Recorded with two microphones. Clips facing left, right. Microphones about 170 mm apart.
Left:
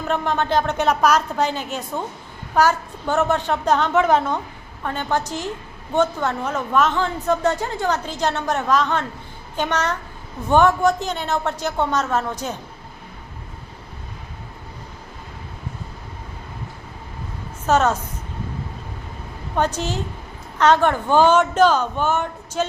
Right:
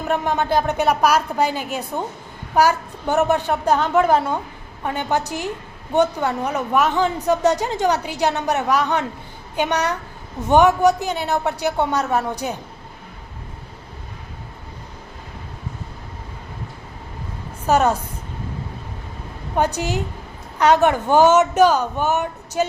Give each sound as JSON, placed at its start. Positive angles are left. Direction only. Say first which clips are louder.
{"t": 0.1, "sound": "speech", "louder": "right 1 dB", "side_deg": -10}
{"t": 17.7, "sound": "a woman's voice", "louder": "right 1 dB", "side_deg": -15}
{"t": 19.5, "sound": "speech", "louder": "right 1 dB", "side_deg": -15}